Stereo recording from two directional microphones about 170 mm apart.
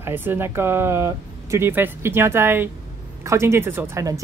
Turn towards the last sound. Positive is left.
turn(degrees=-15)  # may be behind; listen again after turning